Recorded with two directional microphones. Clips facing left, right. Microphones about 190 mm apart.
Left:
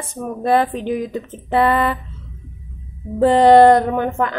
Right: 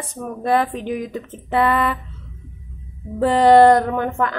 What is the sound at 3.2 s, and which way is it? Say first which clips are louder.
A woman's voice: left 2 dB; 25° left (ahead or behind).